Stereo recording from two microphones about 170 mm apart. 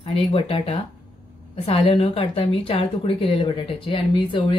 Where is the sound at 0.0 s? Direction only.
35° left (ahead or behind).